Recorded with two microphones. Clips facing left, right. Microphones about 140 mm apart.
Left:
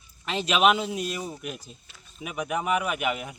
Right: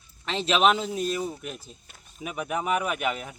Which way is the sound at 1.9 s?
50° right (ahead or behind).